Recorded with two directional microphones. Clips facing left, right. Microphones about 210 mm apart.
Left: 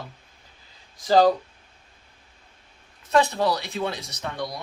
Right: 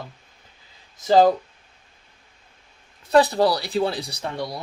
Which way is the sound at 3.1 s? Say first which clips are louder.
Right 4 dB; 35° right (ahead or behind).